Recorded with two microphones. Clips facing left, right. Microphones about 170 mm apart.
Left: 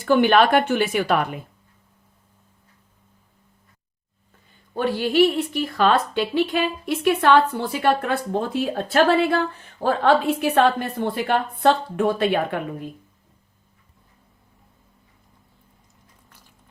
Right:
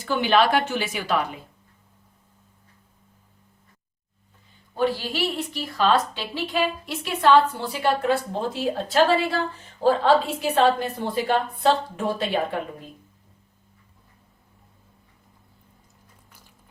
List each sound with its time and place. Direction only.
0.0 s a woman's voice: 55° left (ahead or behind)
4.8 s a woman's voice: 55° left (ahead or behind)